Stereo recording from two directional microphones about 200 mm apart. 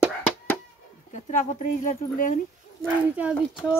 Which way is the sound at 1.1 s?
40° left (ahead or behind).